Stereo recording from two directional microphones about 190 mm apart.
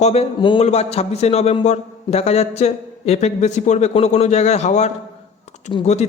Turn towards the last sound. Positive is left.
turn(degrees=30)  # may be behind; listen again after turning